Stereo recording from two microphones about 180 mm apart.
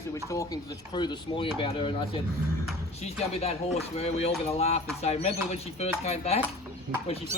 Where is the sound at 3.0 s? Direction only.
35° left (ahead or behind).